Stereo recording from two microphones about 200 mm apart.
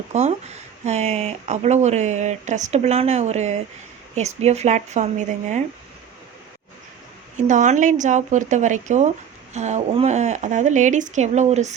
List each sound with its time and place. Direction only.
0.1 s speech: 35° right (ahead or behind)
7.3 s speech: 40° right (ahead or behind)